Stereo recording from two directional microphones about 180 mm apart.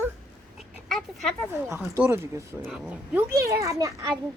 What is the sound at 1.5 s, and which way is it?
Speech, 15° right (ahead or behind).